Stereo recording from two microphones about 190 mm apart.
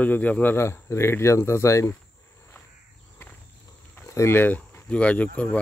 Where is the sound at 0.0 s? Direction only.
10° left (ahead or behind).